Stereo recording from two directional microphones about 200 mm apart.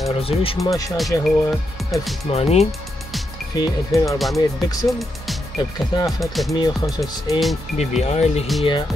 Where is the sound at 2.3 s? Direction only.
30° left (ahead or behind).